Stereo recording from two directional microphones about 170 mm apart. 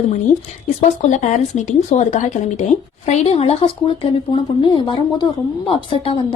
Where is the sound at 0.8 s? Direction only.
45° left (ahead or behind).